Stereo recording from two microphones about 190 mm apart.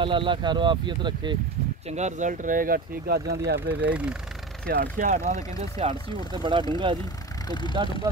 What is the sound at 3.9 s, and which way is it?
Speech, 5° right (ahead or behind).